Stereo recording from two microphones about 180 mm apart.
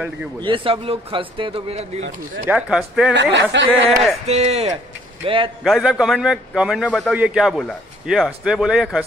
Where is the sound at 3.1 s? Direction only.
85° right.